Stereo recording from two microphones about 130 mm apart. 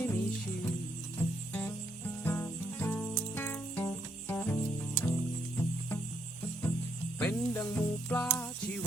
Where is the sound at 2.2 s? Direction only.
15° left (ahead or behind).